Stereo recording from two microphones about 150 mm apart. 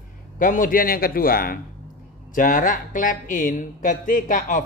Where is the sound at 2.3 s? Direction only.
65° left (ahead or behind).